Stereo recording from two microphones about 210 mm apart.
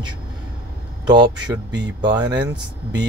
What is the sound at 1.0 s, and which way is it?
Speech, 20° right (ahead or behind).